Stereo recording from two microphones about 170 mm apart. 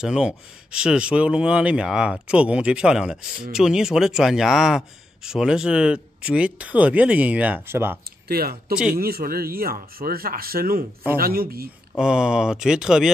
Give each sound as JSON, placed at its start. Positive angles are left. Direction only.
{"t": 0.0, "sound": "speech", "side_deg": -5}
{"t": 8.3, "sound": "speech", "side_deg": -65}
{"t": 12.0, "sound": "speech", "side_deg": -5}